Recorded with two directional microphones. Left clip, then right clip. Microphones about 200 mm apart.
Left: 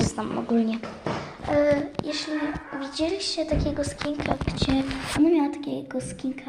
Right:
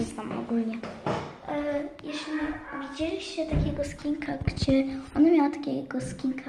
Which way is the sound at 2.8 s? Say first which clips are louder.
Left 6 dB; 25° left (ahead or behind).